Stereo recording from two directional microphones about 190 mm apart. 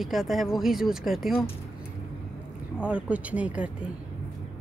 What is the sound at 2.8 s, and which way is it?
Speech, 5° right (ahead or behind).